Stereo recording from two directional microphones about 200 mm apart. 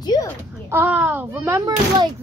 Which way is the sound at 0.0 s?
20° left (ahead or behind).